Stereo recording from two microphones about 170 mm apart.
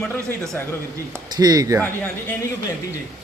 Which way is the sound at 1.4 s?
20° right (ahead or behind).